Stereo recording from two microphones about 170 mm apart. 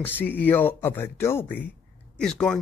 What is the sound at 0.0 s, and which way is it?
A man's voice, 10° left (ahead or behind).